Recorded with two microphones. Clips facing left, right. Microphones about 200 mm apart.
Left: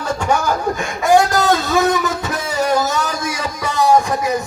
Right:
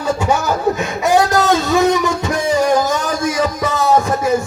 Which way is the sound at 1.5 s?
20° right (ahead or behind).